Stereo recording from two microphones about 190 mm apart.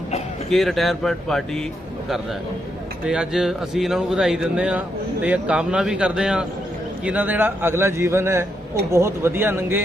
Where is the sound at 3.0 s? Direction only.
5° right (ahead or behind).